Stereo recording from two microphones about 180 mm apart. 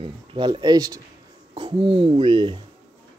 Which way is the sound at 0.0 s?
25° right (ahead or behind).